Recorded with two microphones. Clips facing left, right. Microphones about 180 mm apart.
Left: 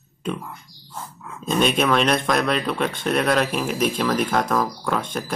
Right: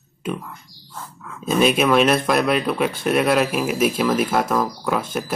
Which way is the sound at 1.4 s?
5° right (ahead or behind).